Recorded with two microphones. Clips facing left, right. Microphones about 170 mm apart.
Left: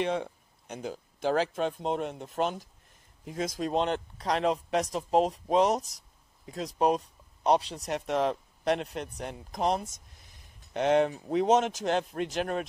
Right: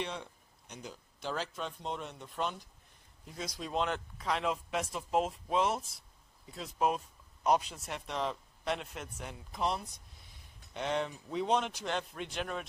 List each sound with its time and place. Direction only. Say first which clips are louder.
0.1 s a sound: left 12 dB; 55° left (ahead or behind)
1.5 s speech: left 9 dB; 55° left (ahead or behind)
3.7 s speech: left 3 dB; 35° left (ahead or behind); by 8.8 s 55° left (ahead or behind)
8.9 s speech: left 7 dB; 35° left (ahead or behind)
10.7 s speech: left 10 dB; 70° left (ahead or behind); by 12.6 s 50° left (ahead or behind)